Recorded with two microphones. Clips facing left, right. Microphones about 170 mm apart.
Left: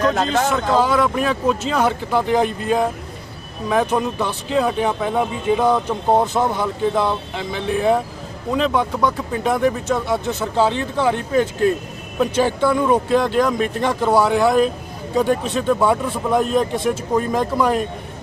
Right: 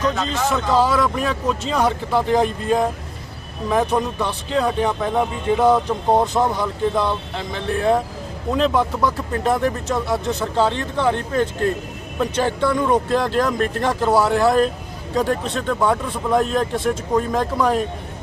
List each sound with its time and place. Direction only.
0.1 s a man's voice: 60° left (ahead or behind)
0.5 s speech: centre (ahead or behind)